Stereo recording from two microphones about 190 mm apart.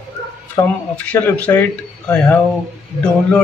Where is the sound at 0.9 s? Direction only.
5° left (ahead or behind).